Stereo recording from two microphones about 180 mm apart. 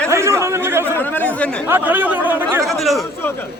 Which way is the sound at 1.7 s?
10° right (ahead or behind).